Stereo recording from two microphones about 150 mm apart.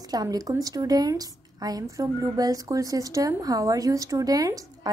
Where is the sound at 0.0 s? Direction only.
25° right (ahead or behind).